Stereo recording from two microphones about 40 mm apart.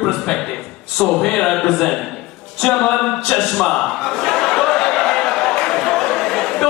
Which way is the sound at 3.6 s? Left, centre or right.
Centre.